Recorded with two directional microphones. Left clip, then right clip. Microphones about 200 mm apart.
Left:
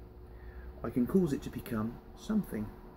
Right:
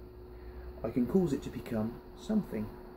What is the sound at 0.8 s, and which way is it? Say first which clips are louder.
Speech: even; centre (ahead or behind).